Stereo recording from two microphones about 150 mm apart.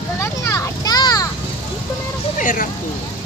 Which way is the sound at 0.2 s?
20° left (ahead or behind).